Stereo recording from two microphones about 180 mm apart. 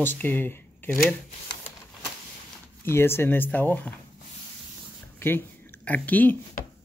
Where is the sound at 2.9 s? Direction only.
15° left (ahead or behind).